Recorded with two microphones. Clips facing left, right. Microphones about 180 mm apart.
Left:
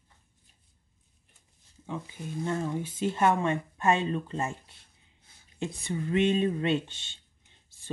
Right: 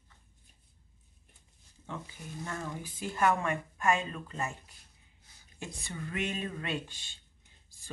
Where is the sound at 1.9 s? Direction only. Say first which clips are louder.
Left 6 dB; 20° left (ahead or behind).